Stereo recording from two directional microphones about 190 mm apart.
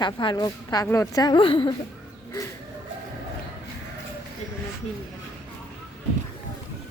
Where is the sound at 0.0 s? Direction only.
25° left (ahead or behind).